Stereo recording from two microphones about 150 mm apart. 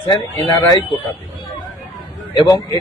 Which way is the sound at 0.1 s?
25° left (ahead or behind).